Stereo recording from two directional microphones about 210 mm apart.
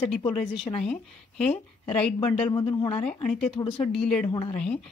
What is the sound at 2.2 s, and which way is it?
Speech, 25° left (ahead or behind).